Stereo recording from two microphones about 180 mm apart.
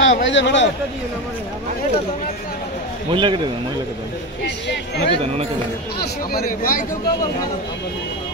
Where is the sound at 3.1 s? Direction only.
25° right (ahead or behind).